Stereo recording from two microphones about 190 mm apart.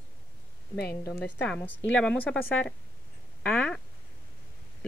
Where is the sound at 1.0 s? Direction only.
10° left (ahead or behind).